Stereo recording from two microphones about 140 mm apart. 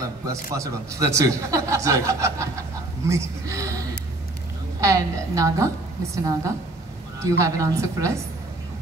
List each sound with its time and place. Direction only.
0.0 s speech: 25° right (ahead or behind)